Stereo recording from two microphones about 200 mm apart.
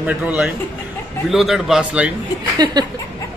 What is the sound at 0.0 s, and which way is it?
A man's voice, 5° right (ahead or behind).